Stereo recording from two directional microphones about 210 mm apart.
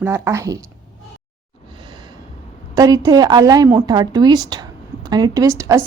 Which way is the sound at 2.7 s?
15° right (ahead or behind).